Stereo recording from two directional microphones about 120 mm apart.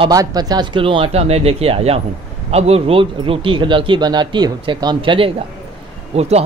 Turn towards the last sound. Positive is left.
turn(degrees=-60)  # may be behind; listen again after turning